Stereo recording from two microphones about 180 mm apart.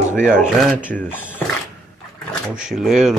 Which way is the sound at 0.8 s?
10° left (ahead or behind).